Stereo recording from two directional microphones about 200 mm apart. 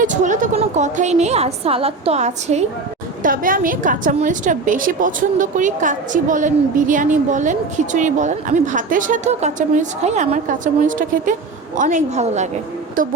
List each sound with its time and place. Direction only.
0.0 s a woman's voice: 40° right (ahead or behind)